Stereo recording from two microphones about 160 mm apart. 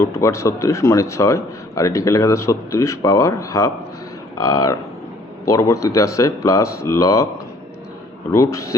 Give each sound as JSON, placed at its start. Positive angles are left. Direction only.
{"t": 0.0, "sound": "speech", "side_deg": 20}
{"t": 8.3, "sound": "speech", "side_deg": 20}